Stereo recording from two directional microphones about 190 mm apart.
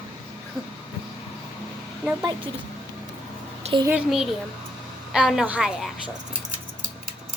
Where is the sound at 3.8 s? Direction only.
5° right (ahead or behind).